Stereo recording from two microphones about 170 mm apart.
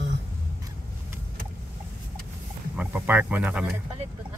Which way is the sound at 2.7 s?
10° right (ahead or behind).